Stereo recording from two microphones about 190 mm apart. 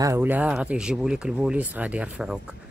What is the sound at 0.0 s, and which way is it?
Speech, 10° right (ahead or behind).